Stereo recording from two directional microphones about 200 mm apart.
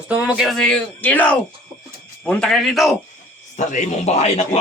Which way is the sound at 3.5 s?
40° left (ahead or behind).